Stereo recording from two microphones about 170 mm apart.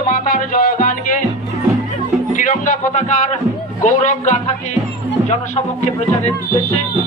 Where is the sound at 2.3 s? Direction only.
50° left (ahead or behind).